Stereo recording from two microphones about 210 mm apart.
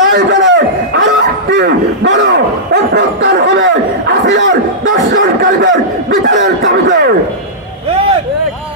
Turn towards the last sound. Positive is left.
turn(degrees=-45)  # may be behind; listen again after turning